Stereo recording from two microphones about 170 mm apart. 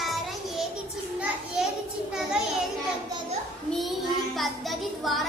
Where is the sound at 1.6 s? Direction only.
5° right (ahead or behind).